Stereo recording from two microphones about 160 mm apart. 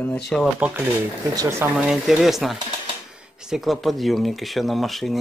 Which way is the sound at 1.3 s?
25° right (ahead or behind).